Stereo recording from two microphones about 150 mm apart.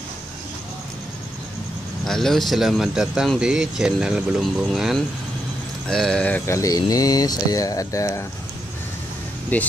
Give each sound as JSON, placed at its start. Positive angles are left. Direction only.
{"t": 2.0, "sound": "speech", "side_deg": 5}
{"t": 9.5, "sound": "speech", "side_deg": 10}